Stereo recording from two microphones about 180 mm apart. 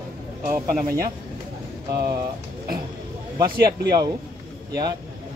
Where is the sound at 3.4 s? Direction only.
60° right (ahead or behind).